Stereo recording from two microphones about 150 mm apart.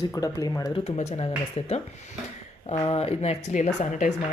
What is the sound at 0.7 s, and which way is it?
Speech, 45° left (ahead or behind).